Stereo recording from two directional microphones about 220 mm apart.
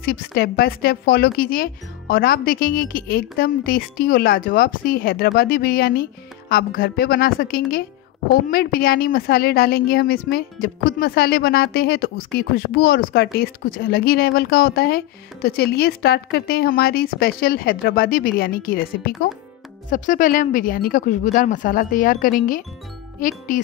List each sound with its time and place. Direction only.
0.0 s speech: 40° left (ahead or behind)